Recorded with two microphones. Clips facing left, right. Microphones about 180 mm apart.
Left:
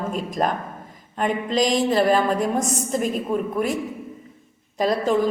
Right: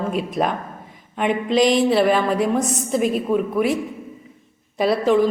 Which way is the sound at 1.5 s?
40° left (ahead or behind).